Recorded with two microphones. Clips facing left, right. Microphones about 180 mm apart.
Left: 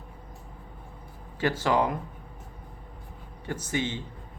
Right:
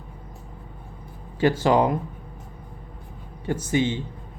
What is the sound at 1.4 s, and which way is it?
Speech, 15° right (ahead or behind).